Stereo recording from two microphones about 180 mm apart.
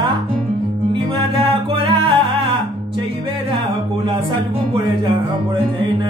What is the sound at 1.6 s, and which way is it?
Music, 30° right (ahead or behind).